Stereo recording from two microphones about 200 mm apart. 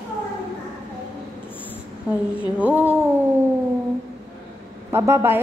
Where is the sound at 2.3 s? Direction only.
5° right (ahead or behind).